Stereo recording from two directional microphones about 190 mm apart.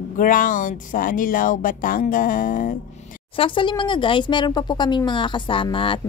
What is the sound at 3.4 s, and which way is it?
A woman's voice, 25° left (ahead or behind).